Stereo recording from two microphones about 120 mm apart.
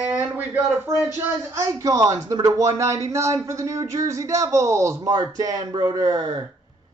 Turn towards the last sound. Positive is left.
turn(degrees=-35)  # may be behind; listen again after turning